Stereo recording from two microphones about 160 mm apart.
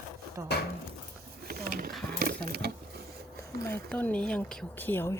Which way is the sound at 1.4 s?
70° right (ahead or behind).